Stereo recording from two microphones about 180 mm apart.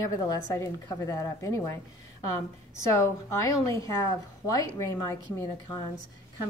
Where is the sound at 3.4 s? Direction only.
20° left (ahead or behind).